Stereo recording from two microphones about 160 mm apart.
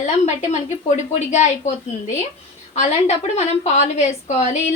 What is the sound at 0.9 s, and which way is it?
Speech, 45° left (ahead or behind).